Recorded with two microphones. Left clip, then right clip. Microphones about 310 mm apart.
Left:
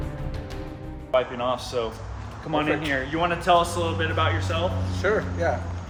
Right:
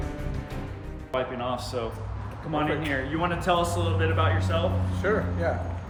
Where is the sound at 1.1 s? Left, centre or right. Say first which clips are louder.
Left 5 dB; centre.